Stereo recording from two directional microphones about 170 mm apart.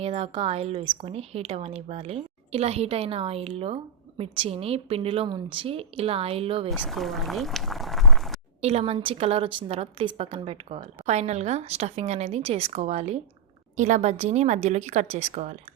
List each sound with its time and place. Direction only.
0.0 s a woman's voice: 35° right (ahead or behind)
6.7 s speech: centre (ahead or behind)
8.6 s a woman's voice: 35° right (ahead or behind)